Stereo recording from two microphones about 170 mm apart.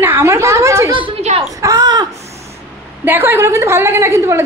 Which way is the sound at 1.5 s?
20° right (ahead or behind).